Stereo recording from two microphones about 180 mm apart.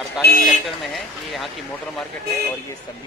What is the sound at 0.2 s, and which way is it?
Speech, 60° left (ahead or behind).